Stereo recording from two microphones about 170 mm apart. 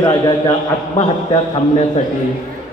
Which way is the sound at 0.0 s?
25° left (ahead or behind).